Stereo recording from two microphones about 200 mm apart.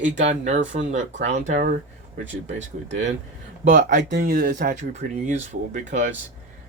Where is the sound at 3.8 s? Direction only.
40° right (ahead or behind).